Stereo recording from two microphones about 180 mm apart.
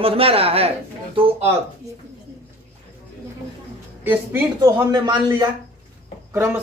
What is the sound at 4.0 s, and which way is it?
A man's voice, 10° right (ahead or behind).